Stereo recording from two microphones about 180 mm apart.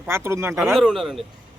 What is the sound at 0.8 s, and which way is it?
Speech, centre (ahead or behind).